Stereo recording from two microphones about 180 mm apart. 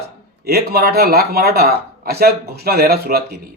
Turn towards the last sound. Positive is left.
turn(degrees=-60)  # may be behind; listen again after turning